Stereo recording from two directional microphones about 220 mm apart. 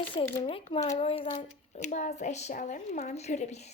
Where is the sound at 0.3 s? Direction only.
25° left (ahead or behind).